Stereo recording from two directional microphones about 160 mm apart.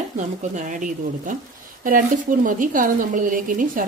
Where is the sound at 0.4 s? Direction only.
50° right (ahead or behind).